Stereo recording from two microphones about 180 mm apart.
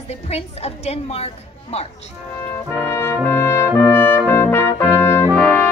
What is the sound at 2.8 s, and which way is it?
Brass instrument, 15° left (ahead or behind).